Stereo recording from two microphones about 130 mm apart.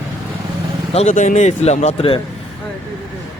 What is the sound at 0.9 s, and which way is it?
Speech, 65° left (ahead or behind).